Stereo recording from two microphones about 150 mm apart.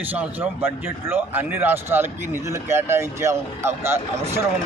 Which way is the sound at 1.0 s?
15° right (ahead or behind).